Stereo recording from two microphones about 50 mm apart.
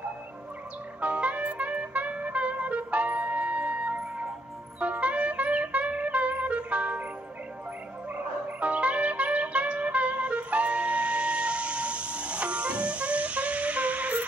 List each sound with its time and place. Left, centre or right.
1.0 s music: right
8.5 s music: right